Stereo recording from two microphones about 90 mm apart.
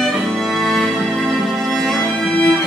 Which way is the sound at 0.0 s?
Centre (ahead or behind).